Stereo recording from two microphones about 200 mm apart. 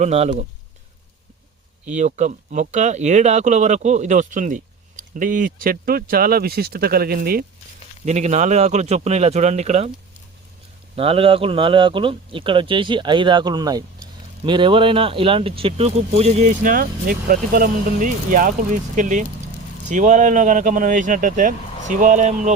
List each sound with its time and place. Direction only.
0.0 s speech: 35° right (ahead or behind)
2.0 s speech: 35° right (ahead or behind)
8.0 s speech: 35° right (ahead or behind)
10.9 s speech: 30° right (ahead or behind)